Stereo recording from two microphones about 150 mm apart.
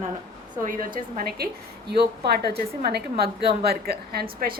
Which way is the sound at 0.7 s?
70° right (ahead or behind).